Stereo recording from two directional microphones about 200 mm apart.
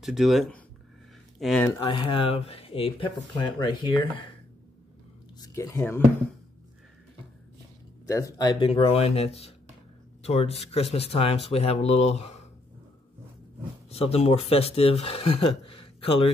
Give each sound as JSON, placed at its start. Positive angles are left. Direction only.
{"t": 0.0, "sound": "speech", "side_deg": 0}
{"t": 1.7, "sound": "speech", "side_deg": 20}
{"t": 5.4, "sound": "speech", "side_deg": 15}
{"t": 8.1, "sound": "speech", "side_deg": 15}
{"t": 13.8, "sound": "speech", "side_deg": 30}